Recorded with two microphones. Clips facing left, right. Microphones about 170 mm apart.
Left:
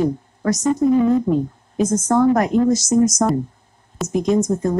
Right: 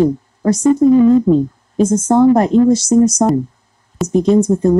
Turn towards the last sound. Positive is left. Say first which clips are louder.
# right 6 dB
turn(degrees=-30)  # may be behind; listen again after turning